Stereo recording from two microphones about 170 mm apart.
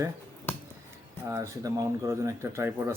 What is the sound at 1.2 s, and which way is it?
Speech, 15° right (ahead or behind).